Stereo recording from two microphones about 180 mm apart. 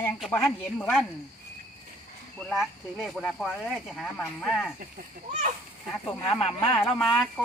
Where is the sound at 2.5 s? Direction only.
Centre (ahead or behind).